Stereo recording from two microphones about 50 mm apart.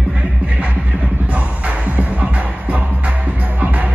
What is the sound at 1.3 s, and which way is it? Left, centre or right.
Music, right.